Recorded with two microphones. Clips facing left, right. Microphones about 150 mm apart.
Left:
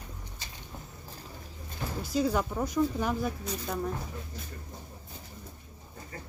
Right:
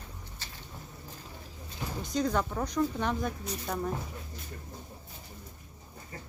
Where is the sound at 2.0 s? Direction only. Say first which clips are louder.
Left 1 dB; 5° left (ahead or behind).